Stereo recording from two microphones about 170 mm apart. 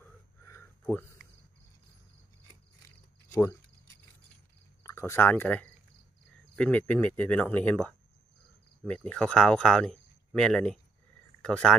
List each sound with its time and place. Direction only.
0.0 s a sound: 15° left (ahead or behind)
3.3 s cricket: 15° left (ahead or behind)
4.8 s speech: 15° left (ahead or behind)